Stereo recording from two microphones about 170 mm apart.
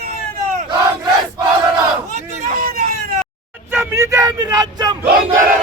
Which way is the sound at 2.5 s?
60° right (ahead or behind).